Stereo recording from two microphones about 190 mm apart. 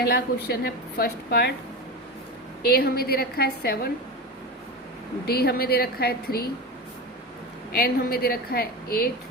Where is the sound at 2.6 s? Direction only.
55° left (ahead or behind).